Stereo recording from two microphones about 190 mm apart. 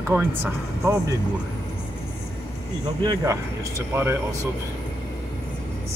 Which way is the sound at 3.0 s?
15° right (ahead or behind).